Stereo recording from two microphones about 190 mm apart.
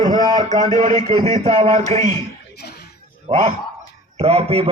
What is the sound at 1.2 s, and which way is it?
Speech, 30° right (ahead or behind).